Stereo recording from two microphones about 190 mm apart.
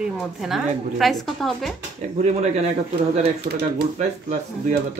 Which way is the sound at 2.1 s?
35° right (ahead or behind).